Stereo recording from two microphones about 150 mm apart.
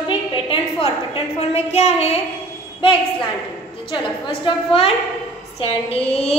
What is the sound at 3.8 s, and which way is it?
A woman's voice, 35° left (ahead or behind).